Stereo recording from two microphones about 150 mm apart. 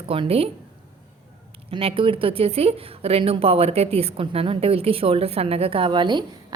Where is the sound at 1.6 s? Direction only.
35° right (ahead or behind).